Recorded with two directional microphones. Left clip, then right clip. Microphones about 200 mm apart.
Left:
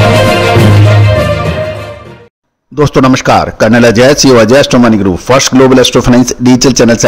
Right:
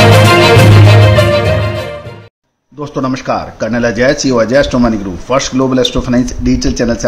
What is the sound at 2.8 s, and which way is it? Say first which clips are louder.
A man's voice: left 11 dB; 55° left (ahead or behind).